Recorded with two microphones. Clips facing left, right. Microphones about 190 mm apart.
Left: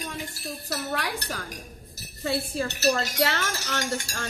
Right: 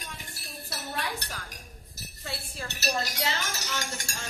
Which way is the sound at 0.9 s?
90° left.